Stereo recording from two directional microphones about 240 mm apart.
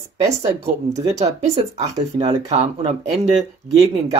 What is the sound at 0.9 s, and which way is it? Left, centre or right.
Speech, right.